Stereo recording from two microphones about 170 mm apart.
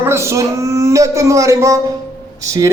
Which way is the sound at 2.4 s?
20° right (ahead or behind).